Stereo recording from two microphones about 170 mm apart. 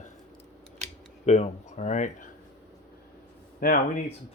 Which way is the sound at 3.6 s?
55° left (ahead or behind).